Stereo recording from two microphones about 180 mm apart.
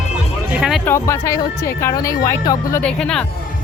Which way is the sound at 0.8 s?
15° left (ahead or behind).